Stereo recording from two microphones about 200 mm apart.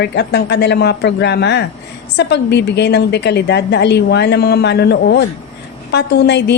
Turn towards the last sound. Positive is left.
turn(degrees=55)  # may be behind; listen again after turning